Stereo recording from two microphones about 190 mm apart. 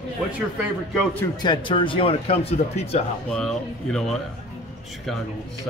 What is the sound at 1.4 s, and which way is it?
Speech, 25° left (ahead or behind).